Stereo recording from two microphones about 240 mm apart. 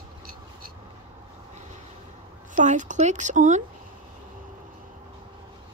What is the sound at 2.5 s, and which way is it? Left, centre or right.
Speech, right.